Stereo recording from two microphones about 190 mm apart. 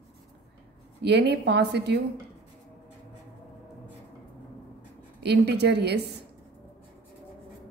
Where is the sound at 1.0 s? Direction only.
60° right (ahead or behind).